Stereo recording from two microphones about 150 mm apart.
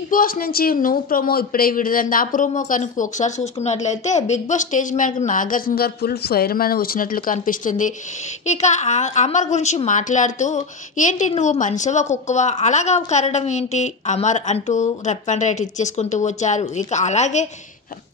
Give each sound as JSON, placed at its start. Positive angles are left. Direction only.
{"t": 0.1, "sound": "speech", "side_deg": 70}
{"t": 8.5, "sound": "a woman's voice", "side_deg": 50}